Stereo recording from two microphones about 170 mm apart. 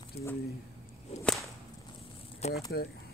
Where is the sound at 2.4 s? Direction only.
40° left (ahead or behind).